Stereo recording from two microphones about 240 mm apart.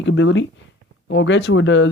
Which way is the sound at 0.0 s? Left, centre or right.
Left.